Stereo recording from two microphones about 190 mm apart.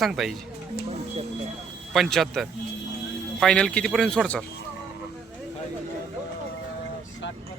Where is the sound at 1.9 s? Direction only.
Centre (ahead or behind).